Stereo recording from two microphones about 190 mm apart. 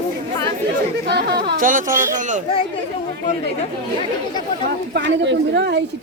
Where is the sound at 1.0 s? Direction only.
60° right (ahead or behind); by 2.4 s 40° right (ahead or behind).